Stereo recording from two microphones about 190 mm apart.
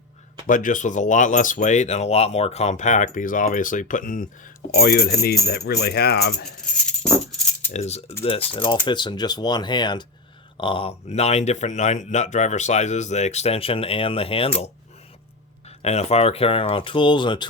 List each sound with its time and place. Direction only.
0.4 s speech: 45° left (ahead or behind)
4.7 s speech: 55° left (ahead or behind)
7.0 s music: centre (ahead or behind)
7.7 s speech: 35° left (ahead or behind)
15.8 s speech: 35° left (ahead or behind)